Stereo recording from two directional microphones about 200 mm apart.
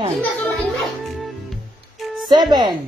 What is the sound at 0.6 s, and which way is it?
Music, centre (ahead or behind).